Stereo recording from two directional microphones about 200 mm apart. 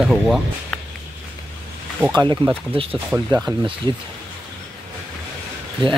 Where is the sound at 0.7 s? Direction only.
5° left (ahead or behind).